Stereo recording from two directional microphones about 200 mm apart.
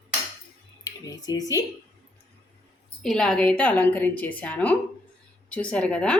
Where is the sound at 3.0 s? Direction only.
5° left (ahead or behind).